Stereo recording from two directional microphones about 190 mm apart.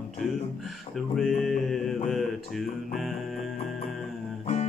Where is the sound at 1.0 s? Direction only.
Centre (ahead or behind).